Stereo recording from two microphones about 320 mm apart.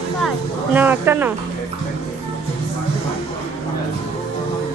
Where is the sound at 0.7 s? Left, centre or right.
Centre.